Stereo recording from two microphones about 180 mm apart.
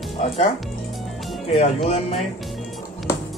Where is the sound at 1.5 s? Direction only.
35° left (ahead or behind).